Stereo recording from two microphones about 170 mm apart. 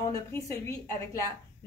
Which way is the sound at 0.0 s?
15° left (ahead or behind).